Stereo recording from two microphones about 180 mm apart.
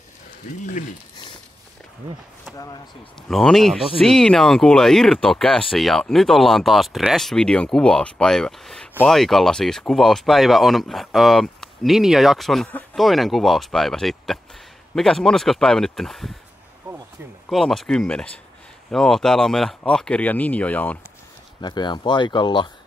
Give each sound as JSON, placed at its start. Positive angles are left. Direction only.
{"t": 2.5, "sound": "speech", "side_deg": 20}
{"t": 3.2, "sound": "speech", "side_deg": 0}
{"t": 17.5, "sound": "speech", "side_deg": 0}
{"t": 21.5, "sound": "speech", "side_deg": 25}